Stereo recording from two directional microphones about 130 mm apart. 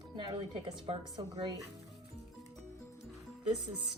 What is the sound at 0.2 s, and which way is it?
Speech, 35° right (ahead or behind).